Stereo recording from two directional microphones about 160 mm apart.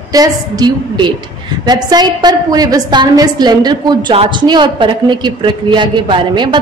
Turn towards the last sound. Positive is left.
turn(degrees=-30)  # may be behind; listen again after turning